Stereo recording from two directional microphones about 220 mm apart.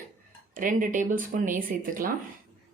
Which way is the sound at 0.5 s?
40° right (ahead or behind).